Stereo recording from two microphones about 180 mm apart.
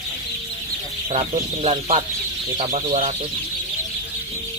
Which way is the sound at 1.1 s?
30° right (ahead or behind).